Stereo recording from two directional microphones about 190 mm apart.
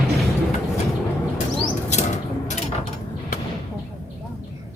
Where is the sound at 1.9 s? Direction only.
40° left (ahead or behind).